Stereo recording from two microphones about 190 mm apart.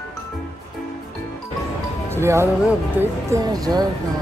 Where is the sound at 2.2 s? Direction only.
15° right (ahead or behind).